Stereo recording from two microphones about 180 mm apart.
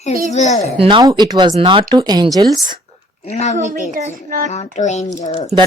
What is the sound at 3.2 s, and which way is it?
Child singing, 35° left (ahead or behind).